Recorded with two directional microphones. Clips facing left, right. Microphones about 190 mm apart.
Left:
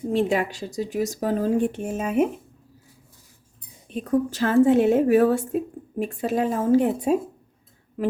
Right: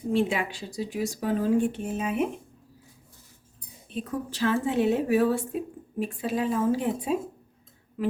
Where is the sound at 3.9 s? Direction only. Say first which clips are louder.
Left 9 dB; 45° left (ahead or behind).